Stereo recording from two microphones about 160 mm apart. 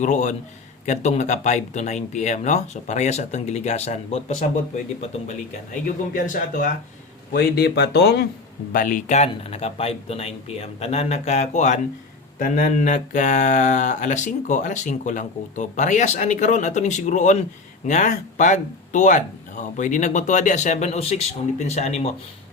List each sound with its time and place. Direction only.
0.0 s speech: 50° left (ahead or behind)
7.3 s speech: 80° left
8.7 s speech: 55° left (ahead or behind)